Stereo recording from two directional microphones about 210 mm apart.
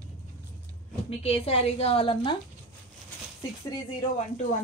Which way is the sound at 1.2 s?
30° left (ahead or behind).